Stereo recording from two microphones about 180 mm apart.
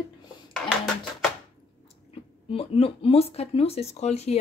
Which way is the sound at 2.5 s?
30° left (ahead or behind).